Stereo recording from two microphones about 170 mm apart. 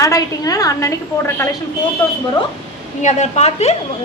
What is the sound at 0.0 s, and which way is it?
Speech, 20° left (ahead or behind).